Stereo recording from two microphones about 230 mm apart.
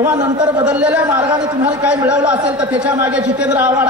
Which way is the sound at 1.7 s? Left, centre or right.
Centre.